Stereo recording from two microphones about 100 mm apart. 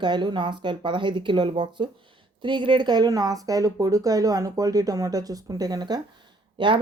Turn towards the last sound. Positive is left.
turn(degrees=-55)  # may be behind; listen again after turning